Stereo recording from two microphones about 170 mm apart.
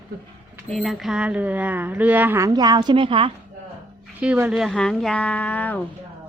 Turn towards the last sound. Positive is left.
turn(degrees=10)  # may be behind; listen again after turning